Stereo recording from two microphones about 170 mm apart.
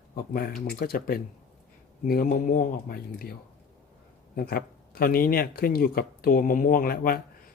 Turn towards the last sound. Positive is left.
turn(degrees=60)  # may be behind; listen again after turning